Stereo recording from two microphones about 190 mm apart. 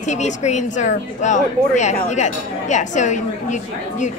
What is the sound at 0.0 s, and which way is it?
A woman's voice, 40° left (ahead or behind).